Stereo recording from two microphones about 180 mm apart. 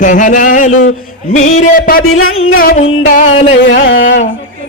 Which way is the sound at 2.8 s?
90° left.